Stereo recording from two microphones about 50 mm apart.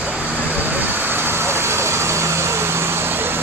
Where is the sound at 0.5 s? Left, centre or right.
Right.